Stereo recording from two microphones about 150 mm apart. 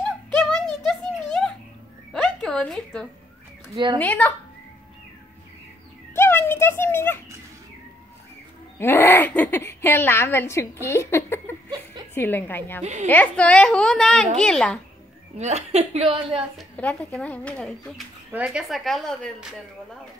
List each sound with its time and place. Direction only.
0.3 s a sound: 5° left (ahead or behind)
3.7 s speech: 30° right (ahead or behind)
4.0 s a woman's voice: 10° left (ahead or behind)
6.1 s speech: 15° left (ahead or behind)
8.7 s a woman's voice: 15° left (ahead or behind)
12.8 s a woman's voice: 50° right (ahead or behind)
13.1 s a woman's voice: 10° left (ahead or behind)
15.3 s a woman's voice: 45° right (ahead or behind)
16.7 s a woman's voice: 10° left (ahead or behind)